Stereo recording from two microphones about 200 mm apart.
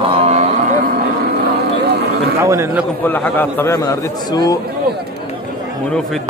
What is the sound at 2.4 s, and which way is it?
Speech, 15° right (ahead or behind).